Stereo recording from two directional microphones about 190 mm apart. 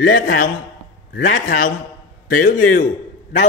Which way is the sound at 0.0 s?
50° left (ahead or behind).